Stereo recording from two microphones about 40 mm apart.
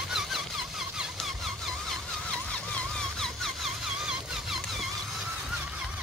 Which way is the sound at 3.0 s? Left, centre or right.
Centre.